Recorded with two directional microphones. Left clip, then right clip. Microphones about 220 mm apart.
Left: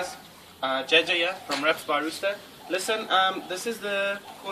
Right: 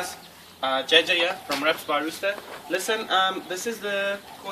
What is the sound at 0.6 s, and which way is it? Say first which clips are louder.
Speech: right 2 dB; 5° right (ahead or behind).